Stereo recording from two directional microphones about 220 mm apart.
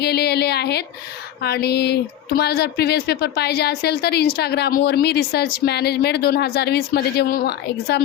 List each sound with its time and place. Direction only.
0.0 s speech: 50° left (ahead or behind)